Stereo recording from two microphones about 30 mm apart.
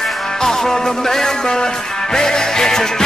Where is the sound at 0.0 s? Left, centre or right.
Centre.